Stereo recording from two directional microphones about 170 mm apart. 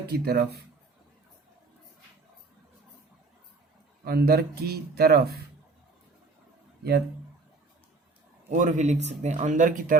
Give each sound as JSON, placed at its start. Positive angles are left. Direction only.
{"t": 0.1, "sound": "speech", "side_deg": -70}
{"t": 4.0, "sound": "speech", "side_deg": -65}
{"t": 8.4, "sound": "speech", "side_deg": -45}